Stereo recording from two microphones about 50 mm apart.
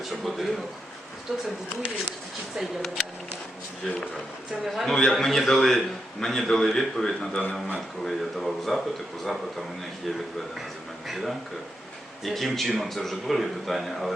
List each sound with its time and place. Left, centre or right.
0.1 s speech: centre
2.6 s speech: centre
4.6 s a man's voice: centre
11.1 s speech: centre